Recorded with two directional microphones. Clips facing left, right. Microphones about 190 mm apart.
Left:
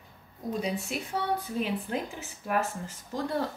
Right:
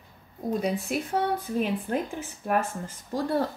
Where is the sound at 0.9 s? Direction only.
50° right (ahead or behind).